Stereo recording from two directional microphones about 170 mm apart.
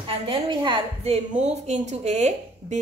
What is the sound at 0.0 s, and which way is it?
A woman's voice, 30° right (ahead or behind).